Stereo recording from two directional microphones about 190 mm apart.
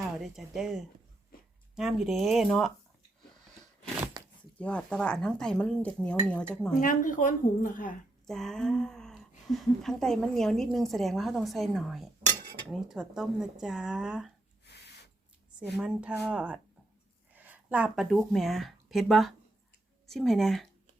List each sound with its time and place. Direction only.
0.2 s a woman's voice: centre (ahead or behind)
4.1 s a sound: 20° right (ahead or behind)
4.5 s a woman's voice: 5° left (ahead or behind)
6.7 s a woman's voice: 45° left (ahead or behind)
8.3 s a sound: centre (ahead or behind)
9.5 s a woman's voice: centre (ahead or behind)
14.7 s owl: 60° left (ahead or behind)
15.7 s a woman's voice: 5° right (ahead or behind)